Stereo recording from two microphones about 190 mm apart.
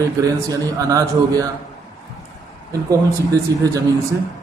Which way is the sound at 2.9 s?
15° right (ahead or behind).